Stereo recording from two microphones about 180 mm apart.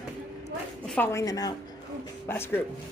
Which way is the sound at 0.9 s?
15° left (ahead or behind).